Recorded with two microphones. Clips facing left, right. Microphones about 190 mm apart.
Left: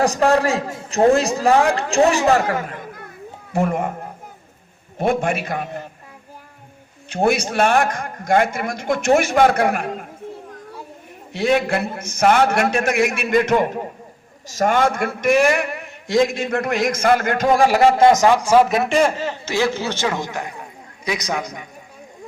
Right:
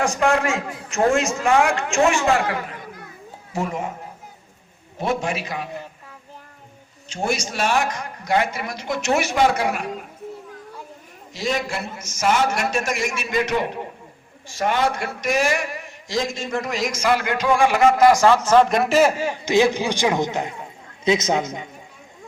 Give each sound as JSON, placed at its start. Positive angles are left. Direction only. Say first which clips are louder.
{"t": 0.0, "sound": "a man's voice", "louder": "left 4 dB", "side_deg": 35}
{"t": 4.9, "sound": "a man's voice", "louder": "left 4 dB", "side_deg": 55}
{"t": 7.1, "sound": "a man's voice", "louder": "left 6 dB", "side_deg": 60}
{"t": 11.3, "sound": "a man's voice", "louder": "left 7 dB", "side_deg": 60}